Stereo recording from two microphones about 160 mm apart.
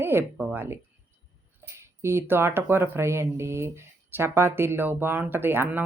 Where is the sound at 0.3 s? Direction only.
15° right (ahead or behind).